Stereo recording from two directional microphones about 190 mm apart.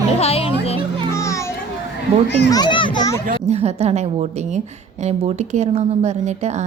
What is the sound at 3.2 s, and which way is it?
Speech, 35° right (ahead or behind).